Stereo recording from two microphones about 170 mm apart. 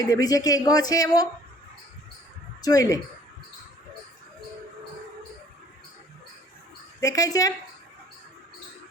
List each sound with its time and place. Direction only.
0.0 s speech: 20° left (ahead or behind)
2.6 s speech: 20° left (ahead or behind)
7.0 s speech: 20° left (ahead or behind)